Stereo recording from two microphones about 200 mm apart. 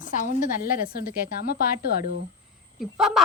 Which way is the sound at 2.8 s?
Centre (ahead or behind).